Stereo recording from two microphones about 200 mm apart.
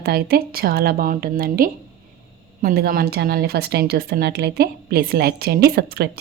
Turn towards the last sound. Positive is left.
turn(degrees=-50)  # may be behind; listen again after turning